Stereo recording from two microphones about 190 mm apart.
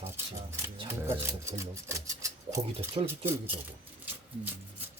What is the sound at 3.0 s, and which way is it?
Speech, 30° right (ahead or behind).